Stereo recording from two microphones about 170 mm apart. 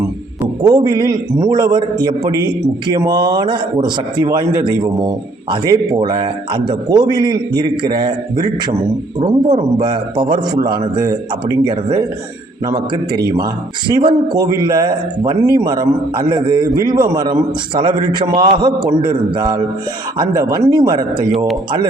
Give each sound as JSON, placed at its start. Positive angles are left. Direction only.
{"t": 0.6, "sound": "a man's voice", "side_deg": -25}
{"t": 9.8, "sound": "a man's voice", "side_deg": -30}